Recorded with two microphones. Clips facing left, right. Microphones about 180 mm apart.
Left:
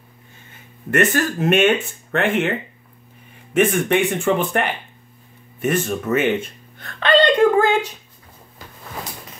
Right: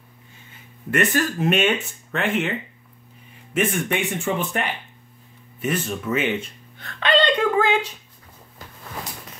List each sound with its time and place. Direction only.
1.1 s speech: 50° left (ahead or behind)